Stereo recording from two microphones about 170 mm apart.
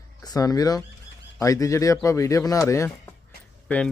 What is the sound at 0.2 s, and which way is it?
A man's voice, 20° left (ahead or behind).